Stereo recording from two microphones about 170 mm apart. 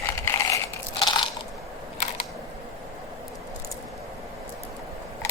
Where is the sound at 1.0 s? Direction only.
25° left (ahead or behind).